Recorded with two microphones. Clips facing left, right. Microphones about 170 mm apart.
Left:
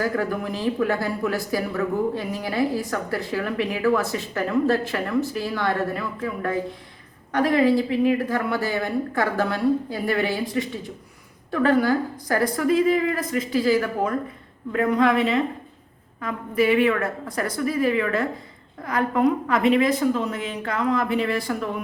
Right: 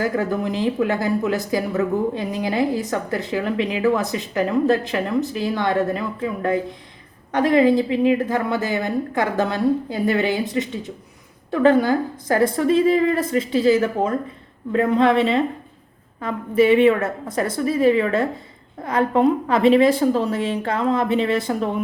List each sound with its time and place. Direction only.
0.0 s speech: 20° right (ahead or behind)